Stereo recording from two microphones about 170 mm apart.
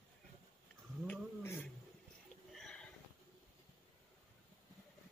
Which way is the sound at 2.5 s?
5° left (ahead or behind).